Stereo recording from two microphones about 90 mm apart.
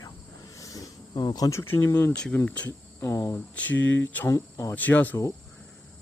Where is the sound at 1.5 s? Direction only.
30° left (ahead or behind).